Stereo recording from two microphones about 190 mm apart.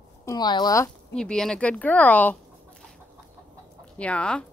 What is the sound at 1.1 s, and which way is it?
Speech, 5° left (ahead or behind).